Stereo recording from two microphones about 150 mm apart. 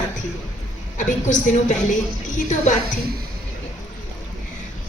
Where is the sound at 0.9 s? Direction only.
55° left (ahead or behind).